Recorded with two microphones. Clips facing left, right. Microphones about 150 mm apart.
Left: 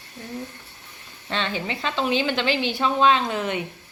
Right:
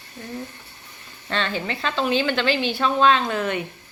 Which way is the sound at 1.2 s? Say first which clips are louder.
Right 1 dB; 15° left (ahead or behind).